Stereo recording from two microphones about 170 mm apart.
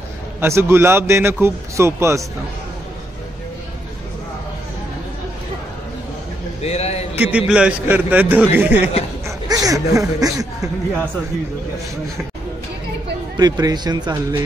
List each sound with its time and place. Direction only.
0.4 s a man's voice: 15° right (ahead or behind)
6.6 s a sound: 40° left (ahead or behind)
7.2 s a man's voice: 10° right (ahead or behind)
9.5 s a sound: 20° right (ahead or behind)
9.9 s speech: 20° right (ahead or behind)
13.4 s speech: 25° right (ahead or behind)